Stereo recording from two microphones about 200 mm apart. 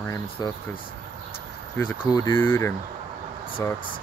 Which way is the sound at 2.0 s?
20° left (ahead or behind).